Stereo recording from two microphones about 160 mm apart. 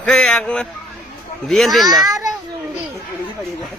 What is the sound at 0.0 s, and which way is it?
Speech, 5° left (ahead or behind).